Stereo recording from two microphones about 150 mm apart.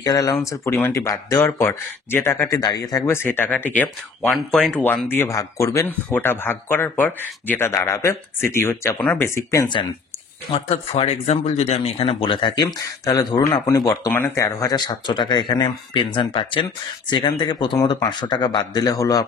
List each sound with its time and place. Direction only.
0.0 s speech: 25° left (ahead or behind)
8.9 s speech: 5° left (ahead or behind)
9.2 s speech: 20° left (ahead or behind)
10.5 s speech: 40° left (ahead or behind); by 19.2 s 25° left (ahead or behind)